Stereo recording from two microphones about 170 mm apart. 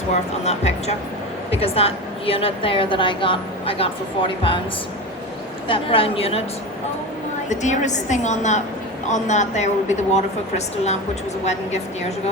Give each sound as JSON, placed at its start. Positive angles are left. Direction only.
{"t": 0.1, "sound": "a woman's voice", "side_deg": 40}
{"t": 5.6, "sound": "a woman's voice", "side_deg": 30}
{"t": 7.5, "sound": "speech", "side_deg": 45}
{"t": 11.4, "sound": "a woman's voice", "side_deg": 40}